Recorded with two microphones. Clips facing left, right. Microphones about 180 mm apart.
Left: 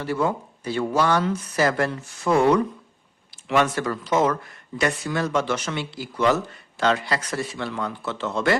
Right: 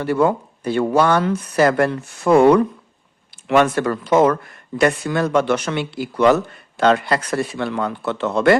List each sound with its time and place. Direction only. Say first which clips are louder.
0.0 s speech: right 7 dB; 60° right (ahead or behind)